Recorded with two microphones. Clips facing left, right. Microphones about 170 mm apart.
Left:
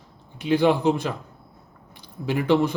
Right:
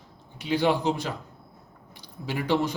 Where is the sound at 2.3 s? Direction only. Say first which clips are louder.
Left 5 dB; 55° left (ahead or behind).